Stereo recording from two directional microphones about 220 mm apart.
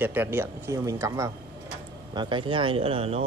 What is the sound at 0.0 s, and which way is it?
Speech, 10° right (ahead or behind).